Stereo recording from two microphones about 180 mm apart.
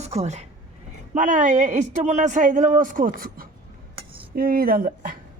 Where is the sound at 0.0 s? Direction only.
40° right (ahead or behind).